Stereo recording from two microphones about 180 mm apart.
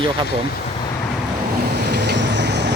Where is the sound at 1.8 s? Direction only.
70° right (ahead or behind).